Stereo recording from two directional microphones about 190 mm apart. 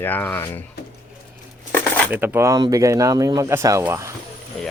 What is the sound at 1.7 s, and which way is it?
Coin, 10° left (ahead or behind).